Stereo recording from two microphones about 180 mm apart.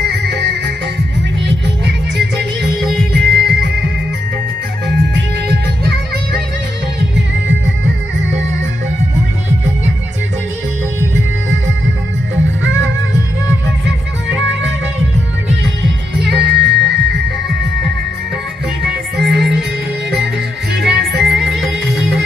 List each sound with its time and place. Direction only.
3.1 s music: 65° right (ahead or behind)
4.8 s music: 65° right (ahead or behind)
16.2 s music: 70° right (ahead or behind)
19.1 s music: 70° right (ahead or behind)
20.8 s music: 70° right (ahead or behind)
21.5 s music: centre (ahead or behind)